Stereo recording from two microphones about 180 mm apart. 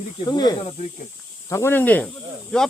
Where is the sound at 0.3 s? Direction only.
20° left (ahead or behind).